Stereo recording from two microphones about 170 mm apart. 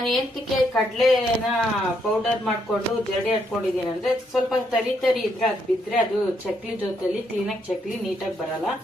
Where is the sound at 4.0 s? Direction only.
Centre (ahead or behind).